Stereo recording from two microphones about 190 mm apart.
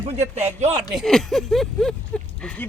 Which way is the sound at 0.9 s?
Centre (ahead or behind).